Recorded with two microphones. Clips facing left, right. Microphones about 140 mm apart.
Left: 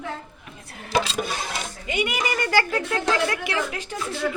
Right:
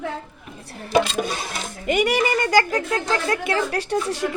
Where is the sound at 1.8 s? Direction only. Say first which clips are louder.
Right 7 dB; 45° right (ahead or behind).